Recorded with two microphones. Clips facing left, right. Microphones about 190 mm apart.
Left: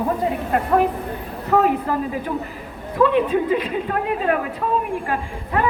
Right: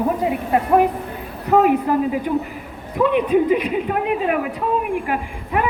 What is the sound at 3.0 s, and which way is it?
A woman's voice, 15° right (ahead or behind).